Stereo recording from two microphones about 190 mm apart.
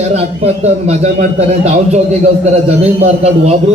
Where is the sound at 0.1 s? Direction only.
35° right (ahead or behind).